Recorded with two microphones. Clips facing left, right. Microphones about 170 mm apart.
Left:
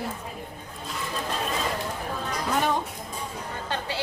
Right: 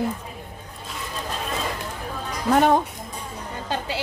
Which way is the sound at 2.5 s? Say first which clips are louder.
Right 9 dB; 50° right (ahead or behind).